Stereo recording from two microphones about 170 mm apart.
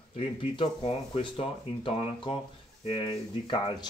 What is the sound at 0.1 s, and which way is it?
Speech, 35° left (ahead or behind).